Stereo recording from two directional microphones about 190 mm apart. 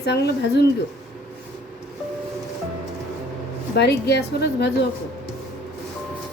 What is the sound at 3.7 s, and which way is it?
Speech, 60° left (ahead or behind).